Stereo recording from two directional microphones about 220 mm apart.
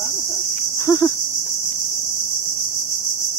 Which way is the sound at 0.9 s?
15° left (ahead or behind).